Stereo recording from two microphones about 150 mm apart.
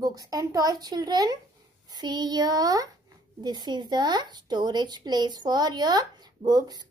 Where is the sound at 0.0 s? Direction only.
25° right (ahead or behind).